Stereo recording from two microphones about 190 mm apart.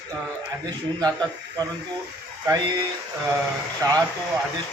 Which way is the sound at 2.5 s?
20° right (ahead or behind).